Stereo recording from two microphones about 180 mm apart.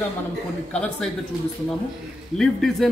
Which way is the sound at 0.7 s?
5° left (ahead or behind).